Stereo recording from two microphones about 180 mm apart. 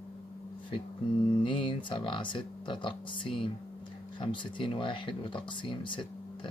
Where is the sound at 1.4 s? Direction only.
30° left (ahead or behind).